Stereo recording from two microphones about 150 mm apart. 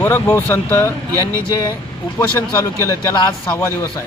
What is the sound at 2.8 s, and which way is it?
Speech, 20° left (ahead or behind).